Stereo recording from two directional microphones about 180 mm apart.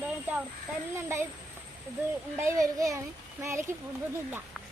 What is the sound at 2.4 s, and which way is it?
A child's voice, 15° right (ahead or behind).